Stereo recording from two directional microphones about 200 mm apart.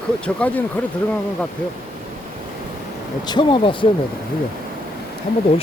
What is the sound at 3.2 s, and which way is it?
Speech, 20° left (ahead or behind).